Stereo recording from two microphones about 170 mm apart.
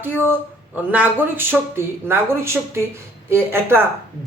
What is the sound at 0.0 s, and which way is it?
Speech, 10° right (ahead or behind).